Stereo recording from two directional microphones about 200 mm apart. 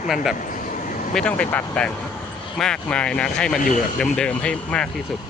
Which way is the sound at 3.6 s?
40° left (ahead or behind).